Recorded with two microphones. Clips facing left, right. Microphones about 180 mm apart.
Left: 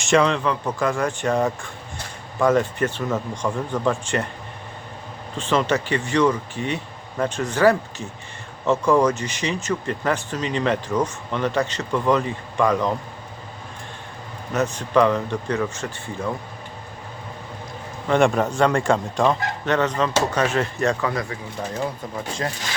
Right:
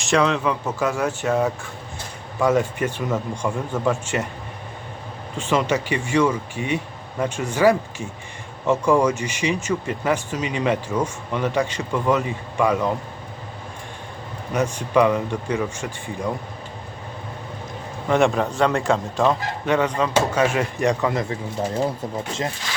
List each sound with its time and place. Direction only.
0.0 s speech: centre (ahead or behind)
5.4 s speech: 10° right (ahead or behind)
14.5 s speech: 10° right (ahead or behind)
18.1 s speech: centre (ahead or behind); by 22.4 s 25° right (ahead or behind)